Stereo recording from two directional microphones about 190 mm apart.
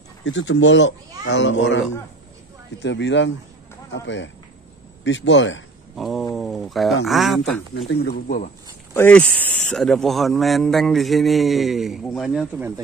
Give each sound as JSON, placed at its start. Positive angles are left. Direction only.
{"t": 0.2, "sound": "speech", "side_deg": 75}
{"t": 5.9, "sound": "speech", "side_deg": 0}
{"t": 6.3, "sound": "a sound", "side_deg": 0}
{"t": 7.1, "sound": "speech", "side_deg": 0}
{"t": 7.9, "sound": "speech", "side_deg": 55}
{"t": 8.9, "sound": "speech", "side_deg": 10}